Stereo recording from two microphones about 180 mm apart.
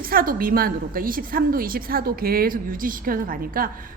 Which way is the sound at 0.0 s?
55° right (ahead or behind).